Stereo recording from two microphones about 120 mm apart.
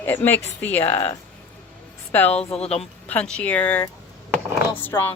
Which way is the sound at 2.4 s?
60° left (ahead or behind).